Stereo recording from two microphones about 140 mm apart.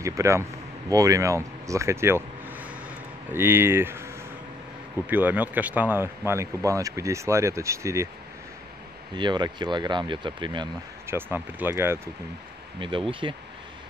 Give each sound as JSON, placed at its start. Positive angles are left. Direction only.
{"t": 0.0, "sound": "speech", "side_deg": -20}
{"t": 9.1, "sound": "speech", "side_deg": -30}
{"t": 11.1, "sound": "speech", "side_deg": -15}
{"t": 12.8, "sound": "speech", "side_deg": -35}